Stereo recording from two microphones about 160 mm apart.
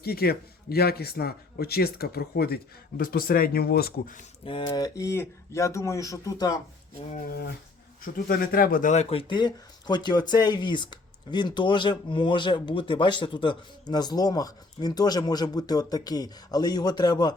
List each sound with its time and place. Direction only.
0.0 s speech: 75° left (ahead or behind)
3.0 s speech: 65° left (ahead or behind)
4.4 s speech: 30° left (ahead or behind)
8.0 s speech: 65° left (ahead or behind); by 17.3 s 25° left (ahead or behind)